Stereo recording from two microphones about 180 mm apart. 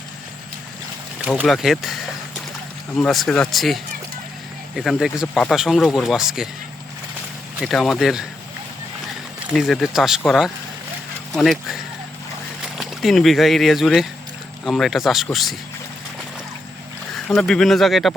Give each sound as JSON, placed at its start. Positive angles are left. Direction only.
{"t": 1.2, "sound": "speech", "side_deg": 0}
{"t": 3.0, "sound": "speech", "side_deg": 0}
{"t": 7.6, "sound": "speech", "side_deg": 0}
{"t": 9.5, "sound": "speech", "side_deg": 0}
{"t": 17.2, "sound": "speech", "side_deg": 5}